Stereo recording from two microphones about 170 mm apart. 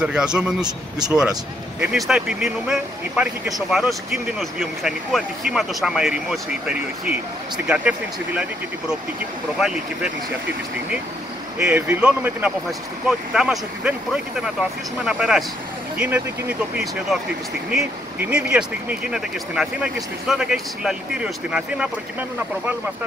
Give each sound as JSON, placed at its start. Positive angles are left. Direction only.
{"t": 0.0, "sound": "speech", "side_deg": -5}
{"t": 0.7, "sound": "speech", "side_deg": -25}
{"t": 1.8, "sound": "speech", "side_deg": -5}
{"t": 11.5, "sound": "speech", "side_deg": -10}